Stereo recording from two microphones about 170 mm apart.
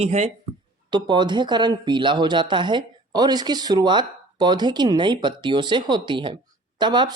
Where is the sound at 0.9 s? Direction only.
25° right (ahead or behind).